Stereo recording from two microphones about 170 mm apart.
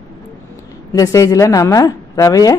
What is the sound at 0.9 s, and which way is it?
Speech, 20° left (ahead or behind).